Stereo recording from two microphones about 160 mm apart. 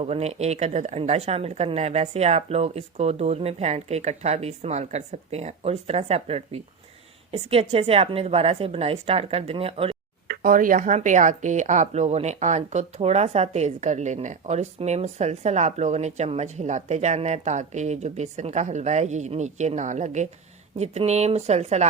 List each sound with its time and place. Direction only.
0.0 s a woman's voice: 40° right (ahead or behind)
10.2 s speech: 60° right (ahead or behind); by 21.8 s 45° right (ahead or behind)